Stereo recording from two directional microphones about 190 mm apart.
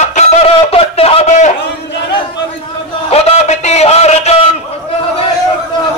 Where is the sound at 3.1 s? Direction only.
35° left (ahead or behind).